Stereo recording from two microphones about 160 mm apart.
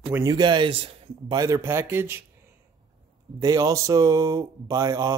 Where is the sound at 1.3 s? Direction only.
20° right (ahead or behind).